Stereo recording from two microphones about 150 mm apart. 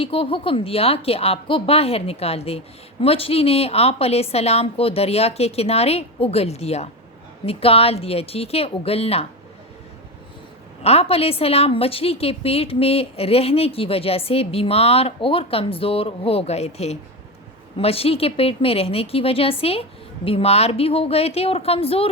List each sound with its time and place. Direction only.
0.0 s a woman's voice: 40° left (ahead or behind)
10.8 s a woman's voice: 40° left (ahead or behind)